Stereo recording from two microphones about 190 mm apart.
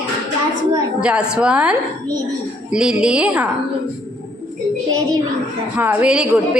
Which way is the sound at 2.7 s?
5° right (ahead or behind).